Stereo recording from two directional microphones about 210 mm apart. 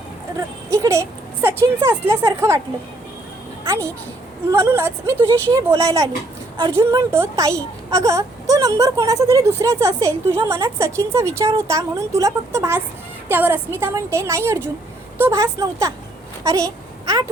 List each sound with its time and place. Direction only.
0.3 s a woman's voice: 15° right (ahead or behind)
3.6 s a woman's voice: 15° right (ahead or behind)